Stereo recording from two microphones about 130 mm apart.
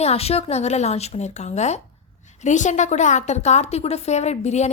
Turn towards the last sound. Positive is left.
turn(degrees=60)  # may be behind; listen again after turning